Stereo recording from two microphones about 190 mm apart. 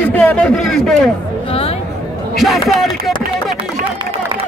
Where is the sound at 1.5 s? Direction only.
30° left (ahead or behind).